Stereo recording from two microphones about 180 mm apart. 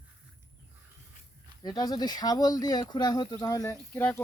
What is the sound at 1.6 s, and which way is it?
Speech, 20° left (ahead or behind).